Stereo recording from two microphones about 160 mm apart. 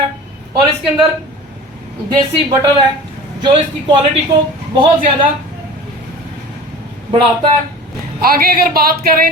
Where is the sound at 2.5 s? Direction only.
25° right (ahead or behind).